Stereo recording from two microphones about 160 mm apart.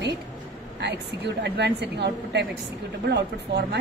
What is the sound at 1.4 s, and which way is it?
Speech, 90° right.